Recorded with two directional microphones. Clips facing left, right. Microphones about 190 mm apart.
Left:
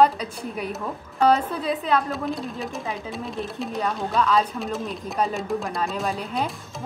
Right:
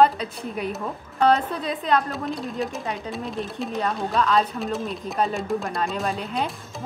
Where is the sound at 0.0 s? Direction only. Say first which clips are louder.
Even; 10° left (ahead or behind).